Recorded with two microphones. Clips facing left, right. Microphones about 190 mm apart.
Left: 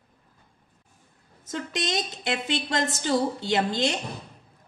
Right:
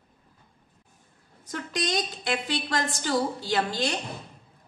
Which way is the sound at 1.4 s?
25° left (ahead or behind).